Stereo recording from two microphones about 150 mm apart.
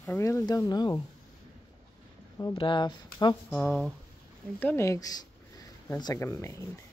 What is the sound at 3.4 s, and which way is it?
Speech, 5° left (ahead or behind).